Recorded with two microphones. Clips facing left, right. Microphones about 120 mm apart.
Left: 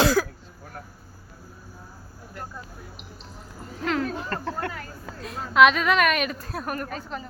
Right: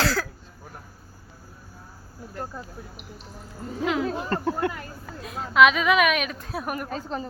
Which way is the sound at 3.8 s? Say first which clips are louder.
Right 1 dB; 10° right (ahead or behind).